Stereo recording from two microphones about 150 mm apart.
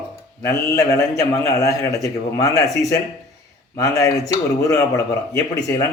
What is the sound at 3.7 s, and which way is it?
A man's voice, 20° left (ahead or behind).